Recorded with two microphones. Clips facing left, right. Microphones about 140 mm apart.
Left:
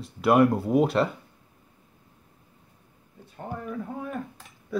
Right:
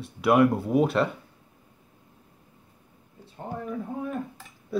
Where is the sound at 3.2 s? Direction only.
30° right (ahead or behind).